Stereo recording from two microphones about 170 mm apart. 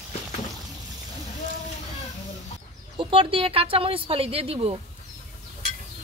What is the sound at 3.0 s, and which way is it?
Speech, 30° right (ahead or behind).